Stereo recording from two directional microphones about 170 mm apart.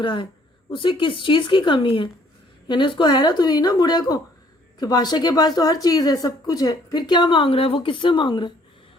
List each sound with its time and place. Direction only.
0.0 s speech: 30° left (ahead or behind)